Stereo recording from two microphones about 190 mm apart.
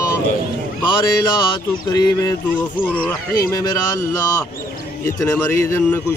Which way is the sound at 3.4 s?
20° left (ahead or behind).